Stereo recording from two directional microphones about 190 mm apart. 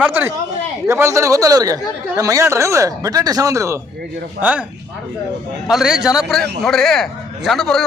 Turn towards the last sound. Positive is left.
turn(degrees=0)  # may be behind; listen again after turning